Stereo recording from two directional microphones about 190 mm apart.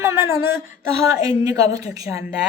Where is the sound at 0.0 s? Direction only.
15° right (ahead or behind).